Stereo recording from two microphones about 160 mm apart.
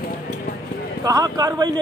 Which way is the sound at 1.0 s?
20° right (ahead or behind).